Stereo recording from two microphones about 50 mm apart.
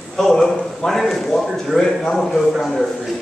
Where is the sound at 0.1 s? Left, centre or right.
Centre.